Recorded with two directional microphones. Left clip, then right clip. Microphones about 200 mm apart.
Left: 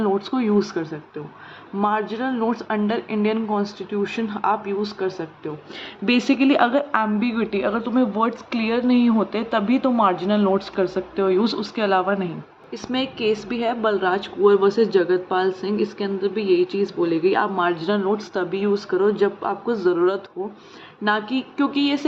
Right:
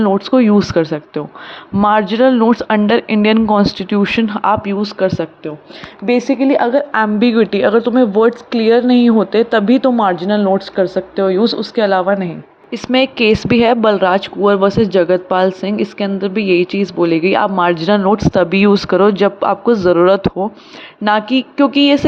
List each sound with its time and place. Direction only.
0.0 s a woman's voice: 35° right (ahead or behind)
6.1 s a woman's voice: centre (ahead or behind)
6.9 s a woman's voice: 35° right (ahead or behind)
12.7 s a woman's voice: 45° right (ahead or behind)